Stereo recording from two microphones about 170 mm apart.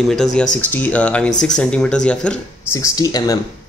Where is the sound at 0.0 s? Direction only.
Centre (ahead or behind).